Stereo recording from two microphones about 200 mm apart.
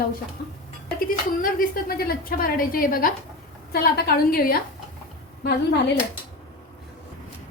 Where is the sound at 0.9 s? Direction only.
45° left (ahead or behind).